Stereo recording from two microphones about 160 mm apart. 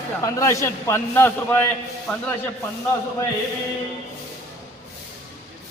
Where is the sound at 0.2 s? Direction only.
20° left (ahead or behind).